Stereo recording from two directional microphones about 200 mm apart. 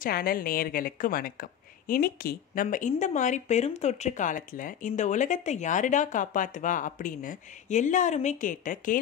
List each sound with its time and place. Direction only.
0.0 s a woman's voice: 50° left (ahead or behind)